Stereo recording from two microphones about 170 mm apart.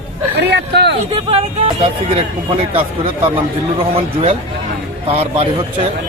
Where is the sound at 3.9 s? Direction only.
35° right (ahead or behind).